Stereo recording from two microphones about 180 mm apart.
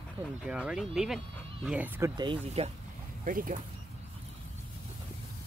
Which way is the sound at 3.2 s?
50° right (ahead or behind).